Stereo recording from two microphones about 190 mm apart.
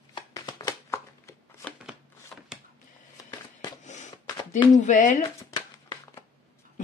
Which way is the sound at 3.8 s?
40° left (ahead or behind).